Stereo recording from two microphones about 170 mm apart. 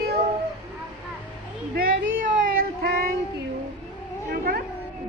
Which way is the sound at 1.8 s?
55° right (ahead or behind).